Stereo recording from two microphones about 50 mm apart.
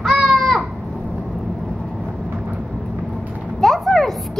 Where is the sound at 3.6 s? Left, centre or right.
Centre.